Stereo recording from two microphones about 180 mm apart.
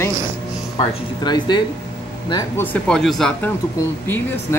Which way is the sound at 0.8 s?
25° left (ahead or behind).